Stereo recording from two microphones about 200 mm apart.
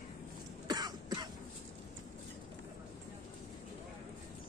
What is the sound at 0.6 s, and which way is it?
Cough, 20° right (ahead or behind).